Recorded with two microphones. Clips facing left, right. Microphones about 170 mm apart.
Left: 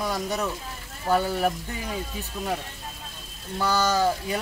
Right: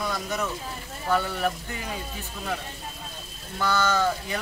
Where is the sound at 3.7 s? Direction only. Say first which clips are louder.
Left 1 dB; 35° left (ahead or behind).